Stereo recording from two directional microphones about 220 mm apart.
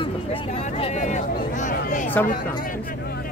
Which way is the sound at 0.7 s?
30° left (ahead or behind).